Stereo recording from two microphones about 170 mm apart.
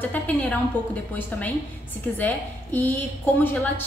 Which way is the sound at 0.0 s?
10° left (ahead or behind).